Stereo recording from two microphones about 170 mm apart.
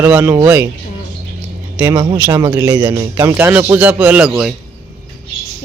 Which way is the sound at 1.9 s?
30° right (ahead or behind).